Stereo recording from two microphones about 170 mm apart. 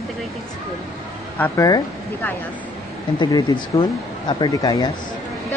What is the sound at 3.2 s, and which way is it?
Speech, 25° left (ahead or behind).